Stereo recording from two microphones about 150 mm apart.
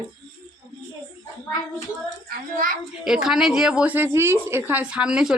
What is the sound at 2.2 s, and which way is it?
Speech, 70° right (ahead or behind).